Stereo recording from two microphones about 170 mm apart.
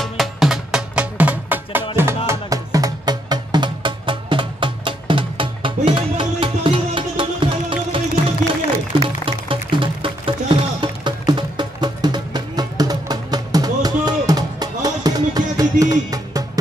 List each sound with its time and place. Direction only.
0.0 s music: centre (ahead or behind); by 8.0 s 30° right (ahead or behind)
9.2 s music: 30° right (ahead or behind)